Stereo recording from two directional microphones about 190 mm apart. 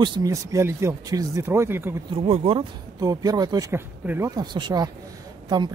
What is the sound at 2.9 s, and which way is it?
Speech, 20° right (ahead or behind).